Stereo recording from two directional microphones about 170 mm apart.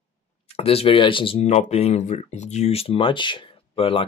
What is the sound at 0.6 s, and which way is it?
Speech, 35° left (ahead or behind).